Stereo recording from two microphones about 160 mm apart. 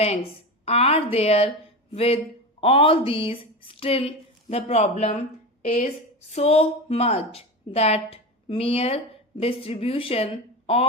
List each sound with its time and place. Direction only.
0.6 s speech: 40° left (ahead or behind)
6.3 s a woman's voice: 40° left (ahead or behind)